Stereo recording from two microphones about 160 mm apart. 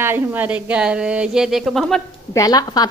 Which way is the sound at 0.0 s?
15° right (ahead or behind).